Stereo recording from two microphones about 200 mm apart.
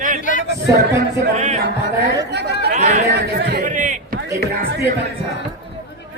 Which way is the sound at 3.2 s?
55° right (ahead or behind).